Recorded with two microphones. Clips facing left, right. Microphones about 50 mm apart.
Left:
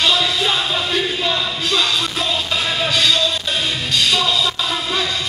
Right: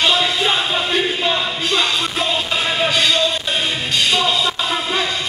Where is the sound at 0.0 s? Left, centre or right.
Centre.